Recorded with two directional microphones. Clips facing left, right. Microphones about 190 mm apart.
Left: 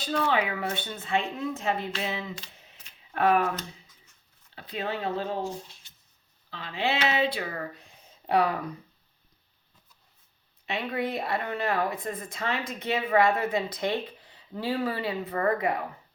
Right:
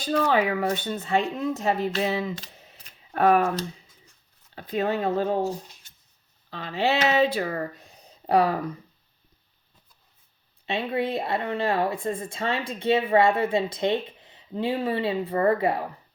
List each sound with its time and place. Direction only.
0.0 s speech: 40° right (ahead or behind)
10.7 s speech: 30° right (ahead or behind)